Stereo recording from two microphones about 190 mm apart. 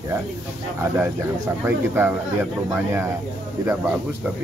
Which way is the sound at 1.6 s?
10° right (ahead or behind).